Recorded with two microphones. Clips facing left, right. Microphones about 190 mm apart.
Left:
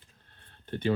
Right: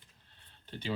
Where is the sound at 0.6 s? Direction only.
55° left (ahead or behind).